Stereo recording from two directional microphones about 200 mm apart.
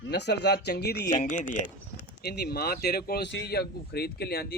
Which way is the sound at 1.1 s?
40° left (ahead or behind).